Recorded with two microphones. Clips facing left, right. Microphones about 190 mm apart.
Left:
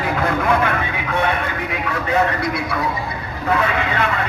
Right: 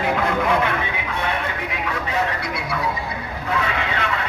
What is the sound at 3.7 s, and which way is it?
Speech, 50° left (ahead or behind).